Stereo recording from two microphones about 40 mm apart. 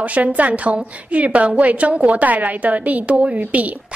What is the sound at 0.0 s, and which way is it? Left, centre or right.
A woman's voice, right.